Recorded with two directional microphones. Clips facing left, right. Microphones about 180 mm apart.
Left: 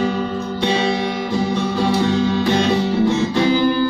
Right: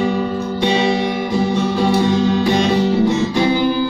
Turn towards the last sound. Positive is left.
turn(degrees=-15)  # may be behind; listen again after turning